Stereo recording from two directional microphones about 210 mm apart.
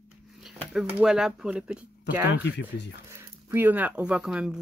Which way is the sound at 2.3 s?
55° left (ahead or behind).